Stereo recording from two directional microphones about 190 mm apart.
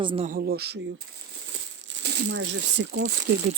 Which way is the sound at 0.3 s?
50° right (ahead or behind).